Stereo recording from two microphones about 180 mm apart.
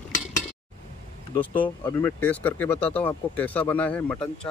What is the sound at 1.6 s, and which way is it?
Speech, 10° left (ahead or behind).